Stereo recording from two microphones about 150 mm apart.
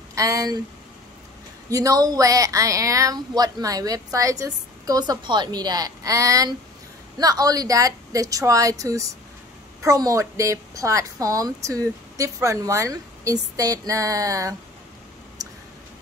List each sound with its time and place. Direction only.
0.1 s speech: 20° right (ahead or behind)
1.7 s speech: 20° right (ahead or behind)
15.4 s a sound: 25° right (ahead or behind)